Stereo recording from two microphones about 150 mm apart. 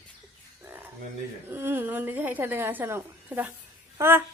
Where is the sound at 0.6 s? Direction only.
15° right (ahead or behind).